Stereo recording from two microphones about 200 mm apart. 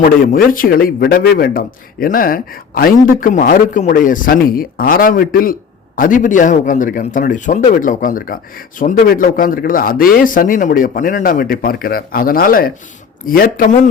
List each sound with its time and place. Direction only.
0.0 s a man's voice: 45° left (ahead or behind)